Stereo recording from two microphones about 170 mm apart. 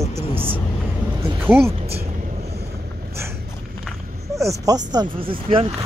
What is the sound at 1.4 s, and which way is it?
Speech, 10° right (ahead or behind).